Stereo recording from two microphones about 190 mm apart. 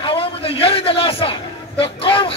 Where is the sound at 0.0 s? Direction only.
30° left (ahead or behind).